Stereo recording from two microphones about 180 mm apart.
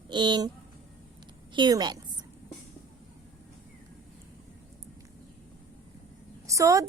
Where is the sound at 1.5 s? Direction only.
25° right (ahead or behind).